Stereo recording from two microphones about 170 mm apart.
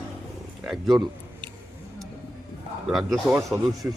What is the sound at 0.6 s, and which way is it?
Speech, centre (ahead or behind).